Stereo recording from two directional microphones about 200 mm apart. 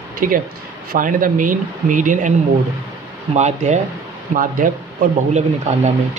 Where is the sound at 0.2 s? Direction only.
45° right (ahead or behind).